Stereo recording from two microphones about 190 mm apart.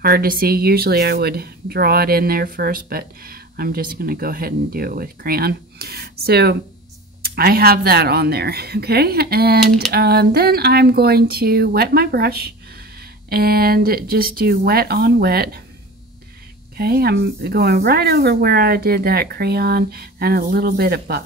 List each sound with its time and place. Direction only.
0.0 s a woman's voice: 55° right (ahead or behind)
16.7 s a woman's voice: 55° right (ahead or behind)